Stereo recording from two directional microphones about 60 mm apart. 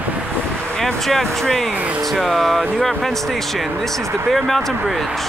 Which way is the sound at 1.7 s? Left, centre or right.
Right.